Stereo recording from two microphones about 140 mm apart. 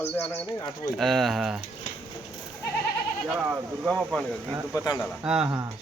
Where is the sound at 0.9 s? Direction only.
Centre (ahead or behind).